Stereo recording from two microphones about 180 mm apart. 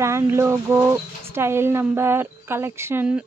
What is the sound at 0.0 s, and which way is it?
Bird, 15° right (ahead or behind).